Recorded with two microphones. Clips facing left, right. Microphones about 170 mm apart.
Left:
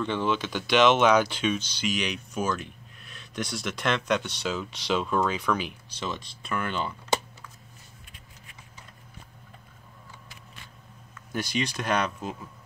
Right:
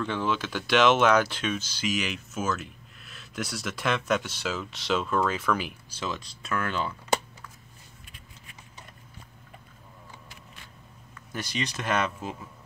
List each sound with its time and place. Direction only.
0.0 s speech: centre (ahead or behind)
11.3 s speech: centre (ahead or behind)